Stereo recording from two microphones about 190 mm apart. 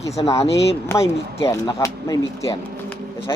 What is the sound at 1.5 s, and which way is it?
Speech, 15° left (ahead or behind).